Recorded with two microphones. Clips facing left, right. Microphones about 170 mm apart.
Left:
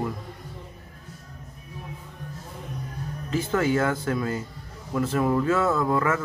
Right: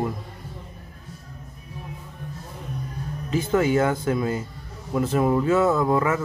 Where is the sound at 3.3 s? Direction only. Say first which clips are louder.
Right 3 dB; 20° right (ahead or behind).